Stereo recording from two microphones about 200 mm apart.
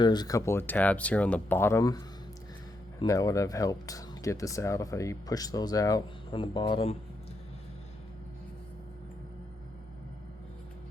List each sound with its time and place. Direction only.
0.0 s speech: 20° left (ahead or behind)